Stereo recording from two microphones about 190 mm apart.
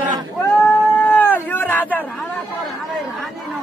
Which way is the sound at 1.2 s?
10° left (ahead or behind).